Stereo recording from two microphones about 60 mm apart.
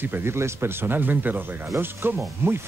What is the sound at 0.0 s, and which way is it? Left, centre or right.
Speech, right.